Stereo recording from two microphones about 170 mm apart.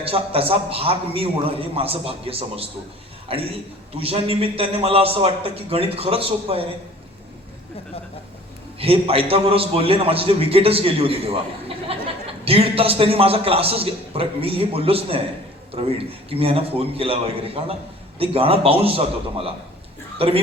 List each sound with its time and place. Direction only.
0.0 s a man's voice: 35° right (ahead or behind)
8.8 s a man's voice: 35° right (ahead or behind)
12.5 s a man's voice: 35° right (ahead or behind)
16.3 s a man's voice: 35° right (ahead or behind)